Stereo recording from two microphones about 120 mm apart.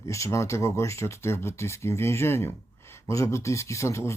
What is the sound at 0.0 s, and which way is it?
Speech, 25° left (ahead or behind).